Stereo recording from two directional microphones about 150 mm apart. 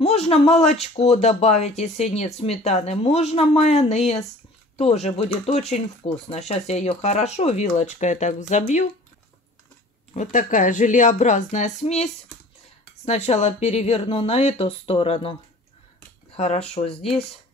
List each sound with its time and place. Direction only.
0.0 s speech: 40° left (ahead or behind)
10.1 s a woman's voice: 60° left (ahead or behind); by 15.3 s 40° left (ahead or behind)
16.3 s speech: 45° left (ahead or behind)